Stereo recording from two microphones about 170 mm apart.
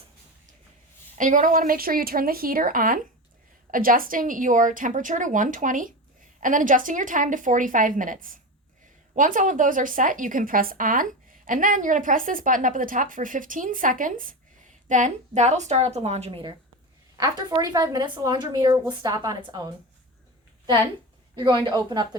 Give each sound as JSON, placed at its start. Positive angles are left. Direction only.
{"t": 1.2, "sound": "a woman's voice", "side_deg": -50}
{"t": 21.3, "sound": "speech", "side_deg": -30}